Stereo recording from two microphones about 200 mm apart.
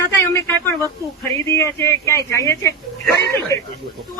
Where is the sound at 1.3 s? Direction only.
15° left (ahead or behind).